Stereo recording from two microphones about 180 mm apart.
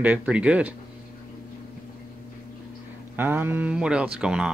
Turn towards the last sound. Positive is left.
turn(degrees=-5)  # may be behind; listen again after turning